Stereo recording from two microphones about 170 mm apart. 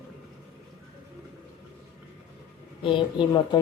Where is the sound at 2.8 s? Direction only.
30° left (ahead or behind).